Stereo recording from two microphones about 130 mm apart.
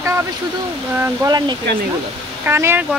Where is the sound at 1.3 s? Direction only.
30° right (ahead or behind).